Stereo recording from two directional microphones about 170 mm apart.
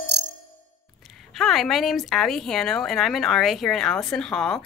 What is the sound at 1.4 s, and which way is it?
A woman's voice, centre (ahead or behind).